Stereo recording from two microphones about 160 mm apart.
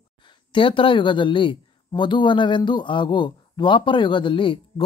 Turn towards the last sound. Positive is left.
turn(degrees=30)  # may be behind; listen again after turning